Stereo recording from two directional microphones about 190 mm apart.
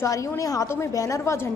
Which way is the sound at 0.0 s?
15° left (ahead or behind).